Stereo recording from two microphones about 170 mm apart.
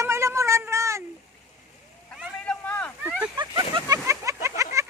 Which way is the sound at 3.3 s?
25° right (ahead or behind).